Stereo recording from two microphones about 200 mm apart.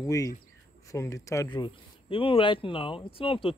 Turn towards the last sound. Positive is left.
turn(degrees=25)  # may be behind; listen again after turning